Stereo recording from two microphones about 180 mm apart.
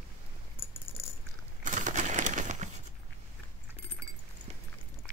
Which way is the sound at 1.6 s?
45° right (ahead or behind).